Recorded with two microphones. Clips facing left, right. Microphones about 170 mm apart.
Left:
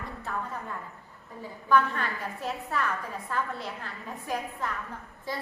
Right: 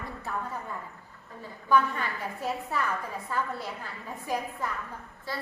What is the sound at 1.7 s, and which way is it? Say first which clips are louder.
A woman's voice: even; 10° right (ahead or behind).